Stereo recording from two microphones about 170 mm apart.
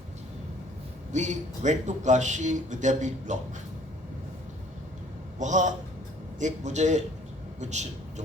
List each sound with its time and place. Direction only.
1.1 s speech: 45° right (ahead or behind)
5.4 s a man's voice: 45° right (ahead or behind)